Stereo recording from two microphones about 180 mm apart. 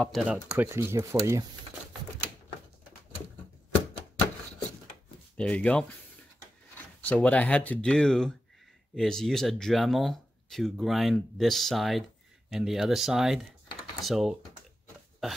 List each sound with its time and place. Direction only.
0.0 s speech: centre (ahead or behind); by 1.4 s 15° right (ahead or behind)
5.4 s speech: 5° left (ahead or behind)
7.0 s speech: 5° left (ahead or behind)